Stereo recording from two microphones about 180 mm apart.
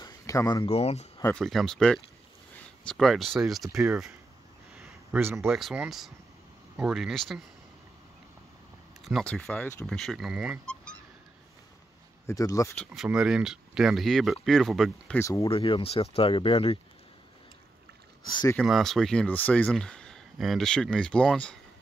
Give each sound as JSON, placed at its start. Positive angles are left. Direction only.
{"t": 0.0, "sound": "a sound", "side_deg": 20}
{"t": 0.7, "sound": "speech", "side_deg": 35}
{"t": 1.3, "sound": "speech", "side_deg": 0}
{"t": 4.7, "sound": "a sound", "side_deg": -5}
{"t": 5.5, "sound": "speech", "side_deg": 0}
{"t": 9.0, "sound": "speech", "side_deg": 5}
{"t": 12.3, "sound": "speech", "side_deg": 20}
{"t": 12.9, "sound": "speech", "side_deg": 0}
{"t": 15.1, "sound": "speech", "side_deg": 15}
{"t": 15.5, "sound": "speech", "side_deg": 30}
{"t": 18.3, "sound": "speech", "side_deg": 25}
{"t": 18.6, "sound": "speech", "side_deg": 0}